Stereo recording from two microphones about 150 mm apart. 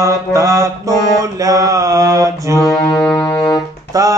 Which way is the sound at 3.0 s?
10° left (ahead or behind).